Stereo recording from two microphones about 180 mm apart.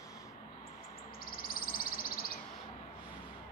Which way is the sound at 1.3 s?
55° left (ahead or behind).